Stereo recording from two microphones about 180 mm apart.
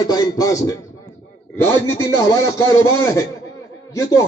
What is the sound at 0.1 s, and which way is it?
A man's voice, 20° left (ahead or behind).